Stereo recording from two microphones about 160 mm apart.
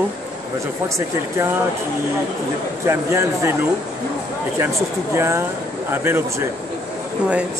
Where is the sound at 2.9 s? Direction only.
15° right (ahead or behind).